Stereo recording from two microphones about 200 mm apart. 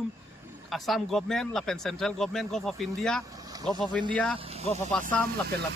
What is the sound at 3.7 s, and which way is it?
Speech, centre (ahead or behind).